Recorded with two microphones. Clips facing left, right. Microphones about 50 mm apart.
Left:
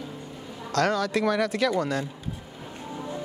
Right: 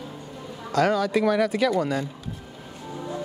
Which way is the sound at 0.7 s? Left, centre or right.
Centre.